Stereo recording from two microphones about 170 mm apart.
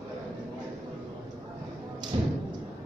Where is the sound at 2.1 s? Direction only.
30° right (ahead or behind).